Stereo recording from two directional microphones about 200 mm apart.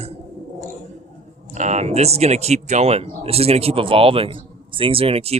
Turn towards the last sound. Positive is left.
turn(degrees=-30)  # may be behind; listen again after turning